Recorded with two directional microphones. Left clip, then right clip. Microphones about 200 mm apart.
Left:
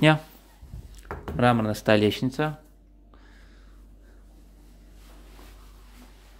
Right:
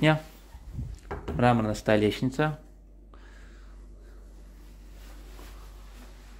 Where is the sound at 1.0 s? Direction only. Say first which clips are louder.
Left 2 dB; 20° left (ahead or behind).